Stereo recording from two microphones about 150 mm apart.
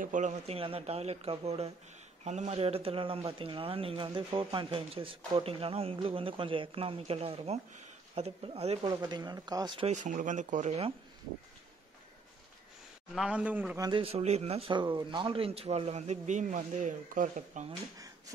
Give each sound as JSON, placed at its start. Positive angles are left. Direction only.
{"t": 0.0, "sound": "speech", "side_deg": -55}
{"t": 8.8, "sound": "speech", "side_deg": -25}
{"t": 9.8, "sound": "speech", "side_deg": -55}
{"t": 13.1, "sound": "a man's voice", "side_deg": -5}
{"t": 13.7, "sound": "speech", "side_deg": -25}
{"t": 14.0, "sound": "speech", "side_deg": -45}